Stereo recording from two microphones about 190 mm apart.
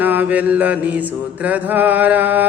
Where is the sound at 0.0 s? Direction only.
10° right (ahead or behind).